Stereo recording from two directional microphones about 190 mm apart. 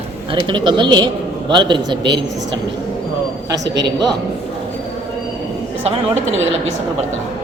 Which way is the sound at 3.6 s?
65° right (ahead or behind).